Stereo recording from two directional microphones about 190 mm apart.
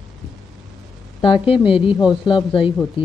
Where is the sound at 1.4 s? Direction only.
30° left (ahead or behind).